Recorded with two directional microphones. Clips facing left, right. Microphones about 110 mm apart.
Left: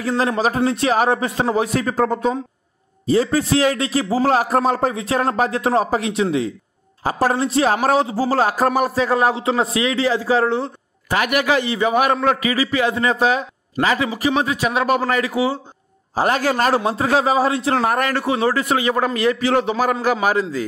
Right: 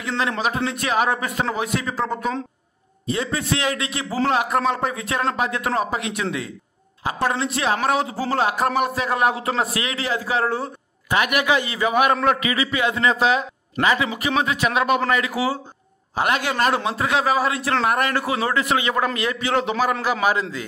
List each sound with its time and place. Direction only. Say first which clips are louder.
0.4 s a man's voice: left 5 dB; 35° left (ahead or behind)
11.1 s a man's voice: left 2 dB; 40° left (ahead or behind)
16.2 s a man's voice: left 3 dB; 40° left (ahead or behind)